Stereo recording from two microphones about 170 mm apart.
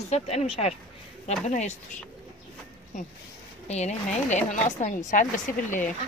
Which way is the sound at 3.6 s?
40° left (ahead or behind).